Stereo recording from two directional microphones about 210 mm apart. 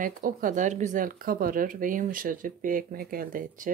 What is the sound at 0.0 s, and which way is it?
Speech, 40° right (ahead or behind).